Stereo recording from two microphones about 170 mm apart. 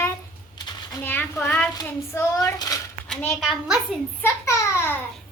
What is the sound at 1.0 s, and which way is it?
A woman's voice, 15° left (ahead or behind).